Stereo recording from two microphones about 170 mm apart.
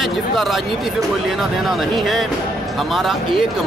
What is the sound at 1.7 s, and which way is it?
Speech, centre (ahead or behind).